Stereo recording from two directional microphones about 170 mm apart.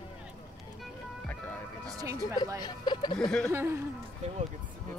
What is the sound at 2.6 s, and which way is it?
Speech, 25° left (ahead or behind).